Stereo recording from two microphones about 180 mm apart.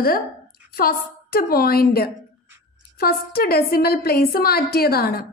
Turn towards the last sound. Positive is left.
turn(degrees=55)  # may be behind; listen again after turning